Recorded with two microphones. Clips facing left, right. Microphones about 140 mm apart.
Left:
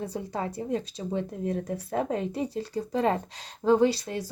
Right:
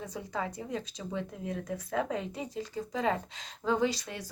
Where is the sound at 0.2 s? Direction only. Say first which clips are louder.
Even; 45° left (ahead or behind).